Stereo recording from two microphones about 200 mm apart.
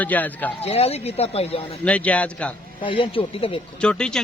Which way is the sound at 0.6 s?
30° left (ahead or behind).